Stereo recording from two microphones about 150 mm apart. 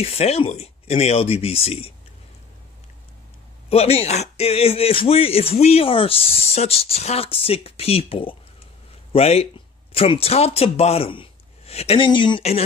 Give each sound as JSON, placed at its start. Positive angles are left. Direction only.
{"t": 0.0, "sound": "speech", "side_deg": 45}
{"t": 3.6, "sound": "a man's voice", "side_deg": 40}